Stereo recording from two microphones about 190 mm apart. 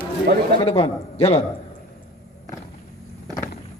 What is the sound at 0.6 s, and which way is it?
Speech, 30° left (ahead or behind).